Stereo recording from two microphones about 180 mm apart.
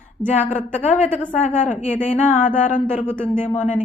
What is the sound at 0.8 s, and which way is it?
A woman's voice, 40° left (ahead or behind).